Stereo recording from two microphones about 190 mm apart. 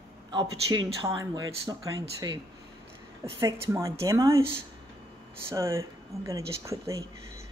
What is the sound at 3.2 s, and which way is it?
A woman's voice, 15° right (ahead or behind).